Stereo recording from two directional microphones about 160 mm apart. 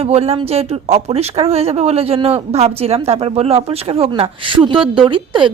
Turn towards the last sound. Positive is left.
turn(degrees=-30)  # may be behind; listen again after turning